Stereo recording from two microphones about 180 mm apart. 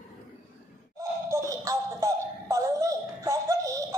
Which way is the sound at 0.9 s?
20° right (ahead or behind).